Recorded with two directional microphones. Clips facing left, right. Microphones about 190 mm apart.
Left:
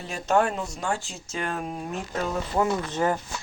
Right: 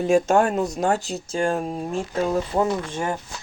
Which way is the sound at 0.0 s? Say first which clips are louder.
Right 6 dB; 50° right (ahead or behind).